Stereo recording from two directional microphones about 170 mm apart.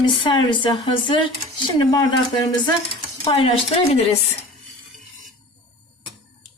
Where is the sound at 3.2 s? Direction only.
35° left (ahead or behind).